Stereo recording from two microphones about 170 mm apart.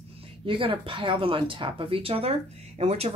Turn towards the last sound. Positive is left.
turn(degrees=-40)  # may be behind; listen again after turning